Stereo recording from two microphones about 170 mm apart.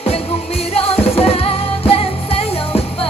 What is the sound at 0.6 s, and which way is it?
Music, 35° left (ahead or behind).